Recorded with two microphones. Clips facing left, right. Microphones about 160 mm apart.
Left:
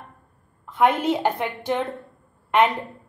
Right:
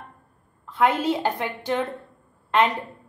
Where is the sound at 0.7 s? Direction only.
15° left (ahead or behind).